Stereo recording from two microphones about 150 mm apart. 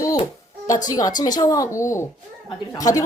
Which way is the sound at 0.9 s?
25° left (ahead or behind).